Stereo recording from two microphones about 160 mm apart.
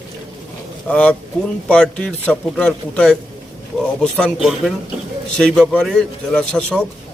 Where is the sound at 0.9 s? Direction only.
5° left (ahead or behind).